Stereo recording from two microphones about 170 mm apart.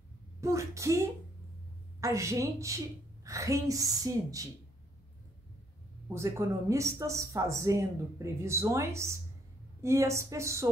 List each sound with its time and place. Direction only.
0.4 s a woman's voice: 20° right (ahead or behind)
6.1 s speech: 15° right (ahead or behind)